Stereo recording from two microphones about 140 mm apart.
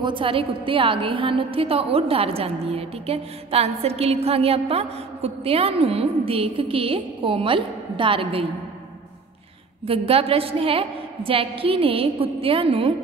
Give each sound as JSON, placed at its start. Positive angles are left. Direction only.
{"t": 0.0, "sound": "a woman's voice", "side_deg": -40}
{"t": 9.8, "sound": "a woman's voice", "side_deg": -45}